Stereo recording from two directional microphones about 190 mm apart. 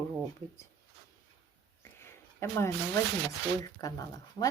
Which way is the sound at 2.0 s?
15° left (ahead or behind).